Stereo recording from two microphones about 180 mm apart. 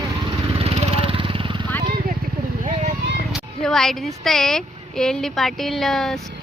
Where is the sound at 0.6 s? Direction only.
35° right (ahead or behind).